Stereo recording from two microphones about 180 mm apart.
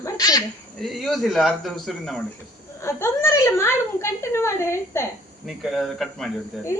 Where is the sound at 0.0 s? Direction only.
20° left (ahead or behind).